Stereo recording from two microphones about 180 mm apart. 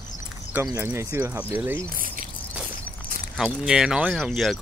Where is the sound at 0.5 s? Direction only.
15° right (ahead or behind).